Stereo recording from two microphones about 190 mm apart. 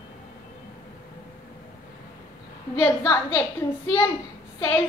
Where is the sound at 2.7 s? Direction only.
15° left (ahead or behind).